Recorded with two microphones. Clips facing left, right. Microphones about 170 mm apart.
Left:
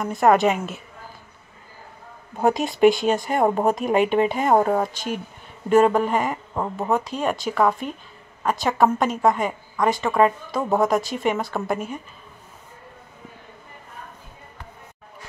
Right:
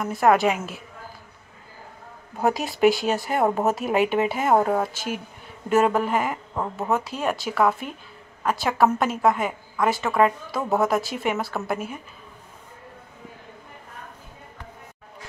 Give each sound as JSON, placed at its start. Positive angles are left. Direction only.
{"t": 0.0, "sound": "a woman's voice", "side_deg": 0}
{"t": 2.3, "sound": "a woman's voice", "side_deg": 0}
{"t": 6.5, "sound": "speech", "side_deg": 10}
{"t": 6.9, "sound": "a woman's voice", "side_deg": -5}
{"t": 9.8, "sound": "speech", "side_deg": 15}
{"t": 10.1, "sound": "a woman's voice", "side_deg": 0}